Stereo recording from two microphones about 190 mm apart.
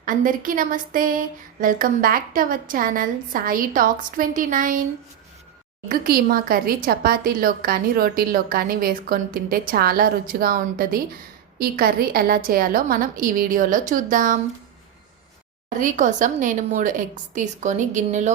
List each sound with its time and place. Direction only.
0.0 s a woman's voice: 45° right (ahead or behind)
5.9 s a woman's voice: 50° right (ahead or behind)
15.8 s speech: 40° right (ahead or behind)